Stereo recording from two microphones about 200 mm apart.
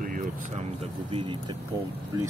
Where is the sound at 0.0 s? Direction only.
45° right (ahead or behind).